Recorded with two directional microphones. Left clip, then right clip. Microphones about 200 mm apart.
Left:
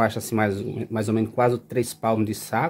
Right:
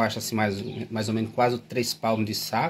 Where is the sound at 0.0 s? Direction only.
55° left (ahead or behind).